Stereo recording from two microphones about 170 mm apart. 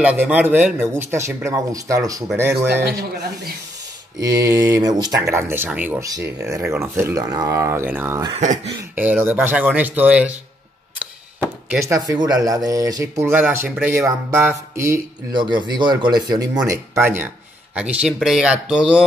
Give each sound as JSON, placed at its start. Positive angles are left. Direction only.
{"t": 0.0, "sound": "speech", "side_deg": -10}
{"t": 2.8, "sound": "speech", "side_deg": -65}
{"t": 4.2, "sound": "speech", "side_deg": -20}
{"t": 15.3, "sound": "speech", "side_deg": -25}